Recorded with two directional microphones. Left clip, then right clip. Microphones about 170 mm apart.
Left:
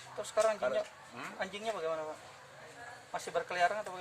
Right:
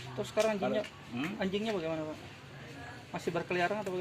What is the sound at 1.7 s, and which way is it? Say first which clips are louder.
Speech: right 1 dB; 25° right (ahead or behind).